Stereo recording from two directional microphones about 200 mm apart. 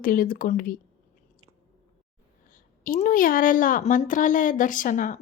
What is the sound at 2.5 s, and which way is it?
A woman's voice, 40° left (ahead or behind).